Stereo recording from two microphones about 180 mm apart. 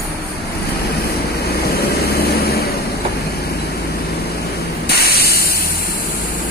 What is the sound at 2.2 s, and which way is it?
Vehicle, 60° left (ahead or behind).